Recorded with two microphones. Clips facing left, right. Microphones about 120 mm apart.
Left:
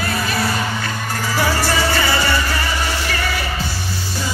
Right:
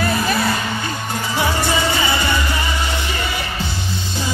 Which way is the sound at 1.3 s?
20° right (ahead or behind).